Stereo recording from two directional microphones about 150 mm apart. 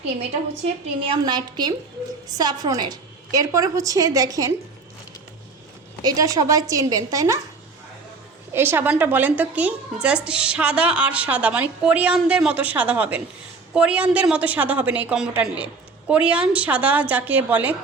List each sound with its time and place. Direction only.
0.0 s a woman's voice: 45° right (ahead or behind)
1.1 s a woman's voice: 30° right (ahead or behind)
6.0 s a woman's voice: 25° right (ahead or behind)
8.5 s a woman's voice: 15° right (ahead or behind)